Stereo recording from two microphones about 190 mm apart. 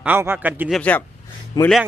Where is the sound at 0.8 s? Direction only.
10° left (ahead or behind).